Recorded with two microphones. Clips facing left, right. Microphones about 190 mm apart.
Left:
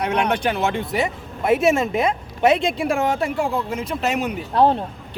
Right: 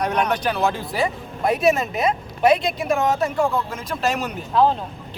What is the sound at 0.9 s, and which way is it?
A man's voice, 20° left (ahead or behind).